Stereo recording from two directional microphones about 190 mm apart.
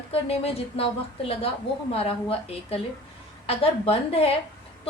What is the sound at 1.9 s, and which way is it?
A woman's voice, 30° left (ahead or behind).